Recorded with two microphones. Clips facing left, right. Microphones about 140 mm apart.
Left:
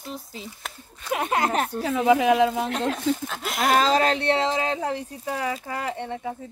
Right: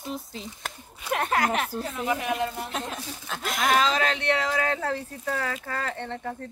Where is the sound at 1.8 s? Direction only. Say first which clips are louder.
Left 9 dB; 90° left.